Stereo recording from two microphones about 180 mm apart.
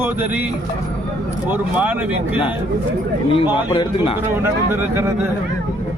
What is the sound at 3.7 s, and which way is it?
Speech, 30° left (ahead or behind).